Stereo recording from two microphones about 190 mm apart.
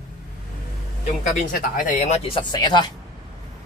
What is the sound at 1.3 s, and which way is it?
Speech, 40° left (ahead or behind).